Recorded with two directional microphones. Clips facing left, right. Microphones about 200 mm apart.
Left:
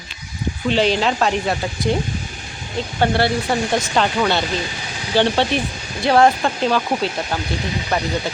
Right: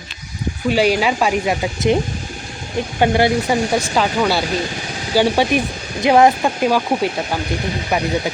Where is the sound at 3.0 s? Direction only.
15° right (ahead or behind).